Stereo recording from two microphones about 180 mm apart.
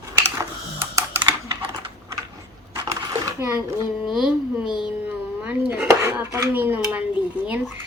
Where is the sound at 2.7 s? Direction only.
20° right (ahead or behind).